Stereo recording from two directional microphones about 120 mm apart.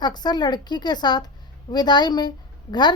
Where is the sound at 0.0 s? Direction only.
35° left (ahead or behind).